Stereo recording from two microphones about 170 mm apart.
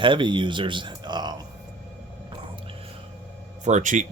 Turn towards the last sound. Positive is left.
turn(degrees=-45)  # may be behind; listen again after turning